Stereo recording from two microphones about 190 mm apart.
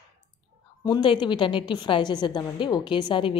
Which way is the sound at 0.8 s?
20° left (ahead or behind).